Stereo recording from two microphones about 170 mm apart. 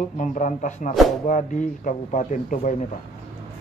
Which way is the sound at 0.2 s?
50° left (ahead or behind).